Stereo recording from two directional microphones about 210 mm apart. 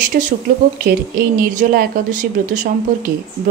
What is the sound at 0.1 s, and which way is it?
Speech, 45° right (ahead or behind).